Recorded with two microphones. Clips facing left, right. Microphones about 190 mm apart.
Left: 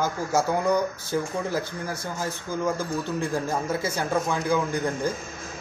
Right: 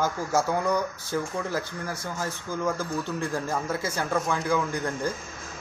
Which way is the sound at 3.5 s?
15° left (ahead or behind).